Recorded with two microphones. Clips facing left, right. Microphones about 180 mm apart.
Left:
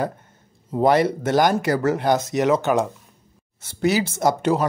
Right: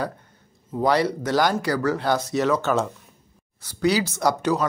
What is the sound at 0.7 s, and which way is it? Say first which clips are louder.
Speech: left 3 dB; 20° left (ahead or behind).